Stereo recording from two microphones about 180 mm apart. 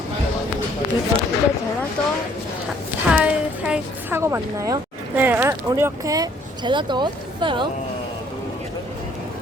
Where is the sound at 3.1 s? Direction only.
5° right (ahead or behind); by 7.6 s 25° right (ahead or behind).